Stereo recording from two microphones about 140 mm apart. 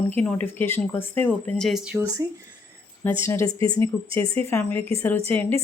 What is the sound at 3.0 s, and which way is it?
A woman's voice, 15° left (ahead or behind).